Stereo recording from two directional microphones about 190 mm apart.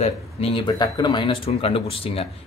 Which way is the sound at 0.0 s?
30° left (ahead or behind).